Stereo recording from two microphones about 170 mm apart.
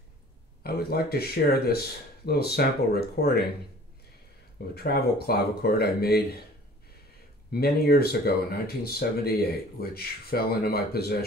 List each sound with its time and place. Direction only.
0.7 s speech: 65° left (ahead or behind)
4.7 s speech: 70° left (ahead or behind)
7.5 s speech: 65° left (ahead or behind)